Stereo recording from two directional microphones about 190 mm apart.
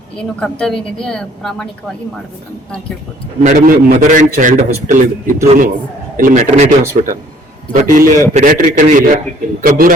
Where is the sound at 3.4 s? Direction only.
40° right (ahead or behind).